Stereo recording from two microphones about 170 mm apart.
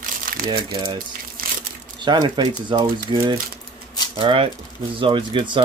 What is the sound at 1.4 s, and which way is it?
Crushing, 55° right (ahead or behind).